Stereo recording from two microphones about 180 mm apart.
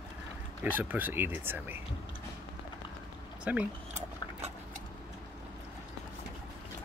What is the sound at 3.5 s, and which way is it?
Speech, 10° right (ahead or behind).